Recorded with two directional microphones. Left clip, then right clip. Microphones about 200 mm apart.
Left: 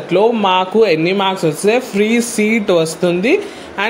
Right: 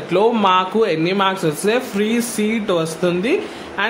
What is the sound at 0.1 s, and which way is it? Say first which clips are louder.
Speech: left 2 dB; 10° left (ahead or behind).